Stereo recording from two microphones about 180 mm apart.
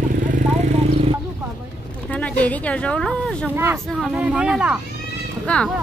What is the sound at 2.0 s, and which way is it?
Speech, 5° left (ahead or behind).